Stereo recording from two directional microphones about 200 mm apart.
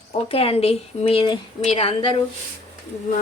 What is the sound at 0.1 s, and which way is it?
Speech, 30° left (ahead or behind).